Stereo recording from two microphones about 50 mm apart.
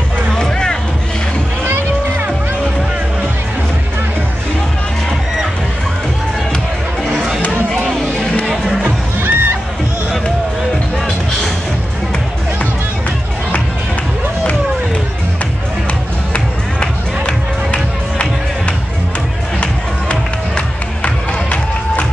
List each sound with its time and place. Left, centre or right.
0.3 s music: centre
7.1 s chatter: centre
8.0 s a sound: left
8.8 s music: right
16.3 s music: left
19.6 s music: left